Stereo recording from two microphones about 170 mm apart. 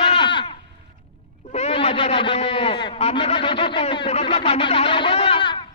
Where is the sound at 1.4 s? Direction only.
40° left (ahead or behind).